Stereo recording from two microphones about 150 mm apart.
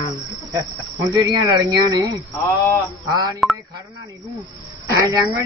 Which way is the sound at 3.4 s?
Centre (ahead or behind).